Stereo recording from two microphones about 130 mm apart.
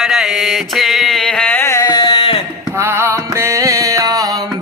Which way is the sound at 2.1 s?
50° left (ahead or behind).